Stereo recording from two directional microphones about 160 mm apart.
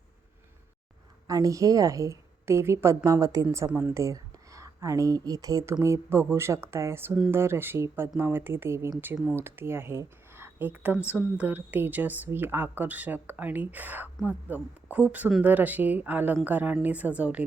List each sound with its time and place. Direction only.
1.3 s a woman's voice: 20° right (ahead or behind)